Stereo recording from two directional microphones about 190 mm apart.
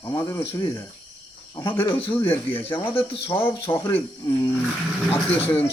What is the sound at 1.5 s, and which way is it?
Speech, 25° left (ahead or behind).